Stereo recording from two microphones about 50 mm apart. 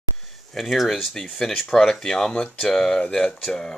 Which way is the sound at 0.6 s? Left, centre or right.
Centre.